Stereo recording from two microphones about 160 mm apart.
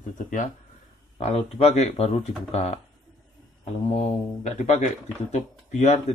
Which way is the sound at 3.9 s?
45° left (ahead or behind).